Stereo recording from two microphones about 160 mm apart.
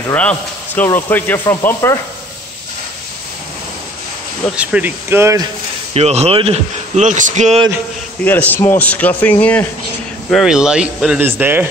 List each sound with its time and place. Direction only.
0.1 s speech: 10° left (ahead or behind)
4.6 s speech: 10° right (ahead or behind)
5.9 s speech: 40° right (ahead or behind)
8.2 s speech: 10° left (ahead or behind)
10.3 s speech: 5° right (ahead or behind)